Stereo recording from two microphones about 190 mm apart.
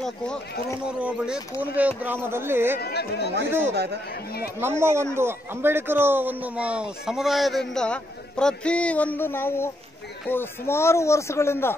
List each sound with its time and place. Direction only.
0.8 s speech: 5° right (ahead or behind)
2.8 s speech: 60° left (ahead or behind)
3.7 s speech: 60° right (ahead or behind)
4.6 s speech: 10° right (ahead or behind); by 11.7 s 15° left (ahead or behind)